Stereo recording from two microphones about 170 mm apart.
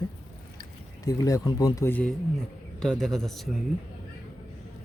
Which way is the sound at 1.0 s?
20° left (ahead or behind).